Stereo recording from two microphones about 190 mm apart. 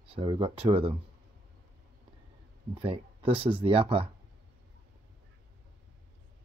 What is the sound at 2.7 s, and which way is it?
Speech, 30° right (ahead or behind).